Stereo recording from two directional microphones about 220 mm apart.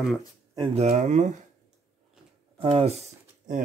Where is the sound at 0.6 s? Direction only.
30° right (ahead or behind).